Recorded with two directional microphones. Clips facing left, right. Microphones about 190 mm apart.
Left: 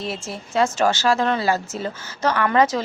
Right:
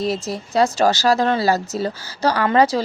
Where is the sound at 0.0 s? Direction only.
40° right (ahead or behind).